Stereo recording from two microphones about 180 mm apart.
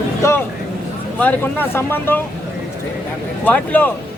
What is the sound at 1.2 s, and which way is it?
Speech, 10° left (ahead or behind).